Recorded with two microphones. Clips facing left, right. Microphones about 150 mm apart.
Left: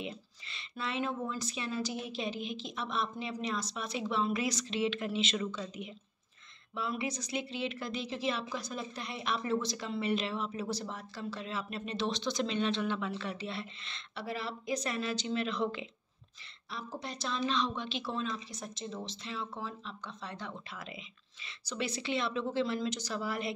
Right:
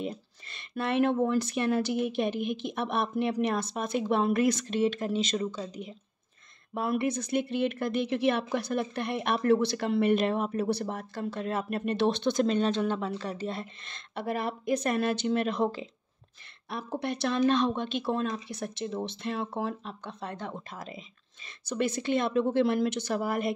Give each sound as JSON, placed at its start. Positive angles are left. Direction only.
{"t": 0.0, "sound": "speech", "side_deg": -45}
{"t": 6.7, "sound": "speech", "side_deg": -55}
{"t": 16.6, "sound": "speech", "side_deg": -60}